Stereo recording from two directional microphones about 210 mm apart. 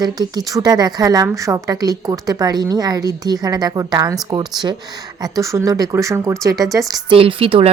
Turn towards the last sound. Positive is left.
turn(degrees=-25)  # may be behind; listen again after turning